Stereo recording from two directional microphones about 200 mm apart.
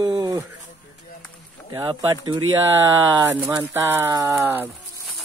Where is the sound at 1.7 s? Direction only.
20° right (ahead or behind).